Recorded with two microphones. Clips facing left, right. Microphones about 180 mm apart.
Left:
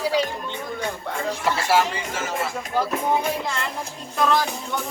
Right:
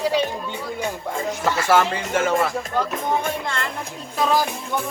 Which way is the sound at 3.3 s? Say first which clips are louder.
Even; 5° left (ahead or behind).